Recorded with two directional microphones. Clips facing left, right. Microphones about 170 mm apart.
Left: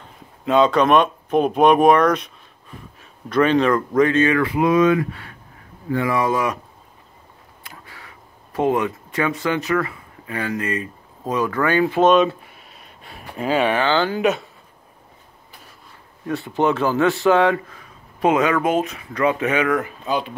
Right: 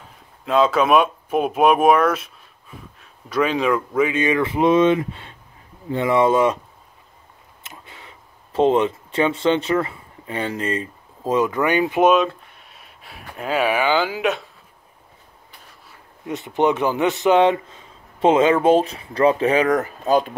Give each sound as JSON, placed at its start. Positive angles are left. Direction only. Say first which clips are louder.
{"t": 0.0, "sound": "speech", "louder": "left 7 dB", "side_deg": -5}
{"t": 7.6, "sound": "speech", "louder": "even", "side_deg": -20}
{"t": 12.1, "sound": "speech", "louder": "left 2 dB", "side_deg": 0}
{"t": 16.3, "sound": "speech", "louder": "even", "side_deg": -20}